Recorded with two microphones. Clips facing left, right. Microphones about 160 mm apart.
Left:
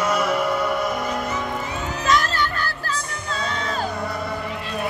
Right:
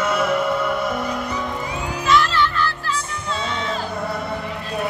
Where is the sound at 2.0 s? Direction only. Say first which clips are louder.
Right 3 dB; 45° left (ahead or behind).